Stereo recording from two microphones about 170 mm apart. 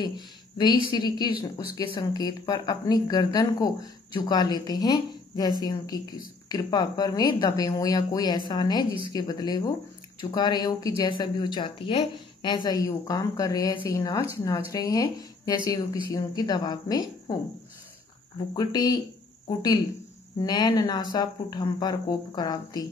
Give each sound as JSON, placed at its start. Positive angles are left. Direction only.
{"t": 0.9, "sound": "speech", "side_deg": 25}
{"t": 18.5, "sound": "speech", "side_deg": 25}
{"t": 20.3, "sound": "speech", "side_deg": 25}